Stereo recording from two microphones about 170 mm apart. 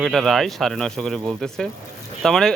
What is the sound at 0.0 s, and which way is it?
Speech, centre (ahead or behind).